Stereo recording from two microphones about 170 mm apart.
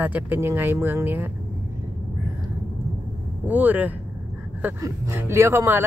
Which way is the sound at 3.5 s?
10° right (ahead or behind).